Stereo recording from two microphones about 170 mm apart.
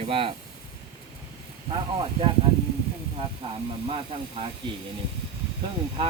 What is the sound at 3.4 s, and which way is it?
Speech, 30° right (ahead or behind).